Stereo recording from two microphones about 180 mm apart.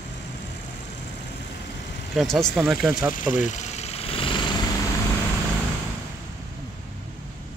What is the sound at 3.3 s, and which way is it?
Engine, 40° left (ahead or behind).